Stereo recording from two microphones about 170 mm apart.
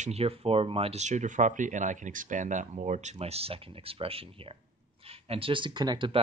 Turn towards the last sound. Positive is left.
turn(degrees=-25)  # may be behind; listen again after turning